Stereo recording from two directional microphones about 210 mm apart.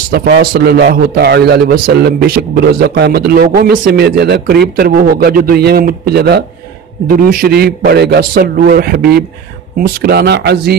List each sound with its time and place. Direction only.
0.1 s a man's voice: 45° right (ahead or behind)